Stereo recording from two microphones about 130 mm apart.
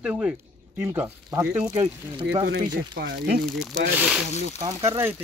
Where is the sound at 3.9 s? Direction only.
10° right (ahead or behind).